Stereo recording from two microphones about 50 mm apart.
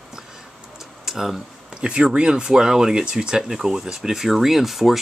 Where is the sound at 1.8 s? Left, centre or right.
Right; by 5.0 s centre.